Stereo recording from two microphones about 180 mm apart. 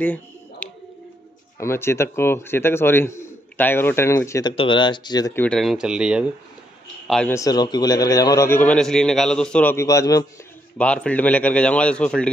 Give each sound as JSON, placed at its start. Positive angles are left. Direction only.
{"t": 0.0, "sound": "bird", "side_deg": 5}
{"t": 1.6, "sound": "speech", "side_deg": 15}
{"t": 5.4, "sound": "speech", "side_deg": 5}
{"t": 7.3, "sound": "speech", "side_deg": 20}
{"t": 10.8, "sound": "speech", "side_deg": 5}